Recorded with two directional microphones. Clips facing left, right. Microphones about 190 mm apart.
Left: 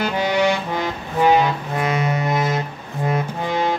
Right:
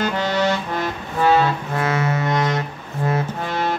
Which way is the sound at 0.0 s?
10° left (ahead or behind).